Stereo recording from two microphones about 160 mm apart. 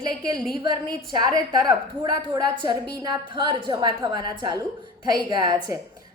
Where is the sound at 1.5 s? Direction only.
25° right (ahead or behind).